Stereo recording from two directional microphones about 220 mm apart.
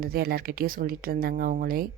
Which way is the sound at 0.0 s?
45° right (ahead or behind).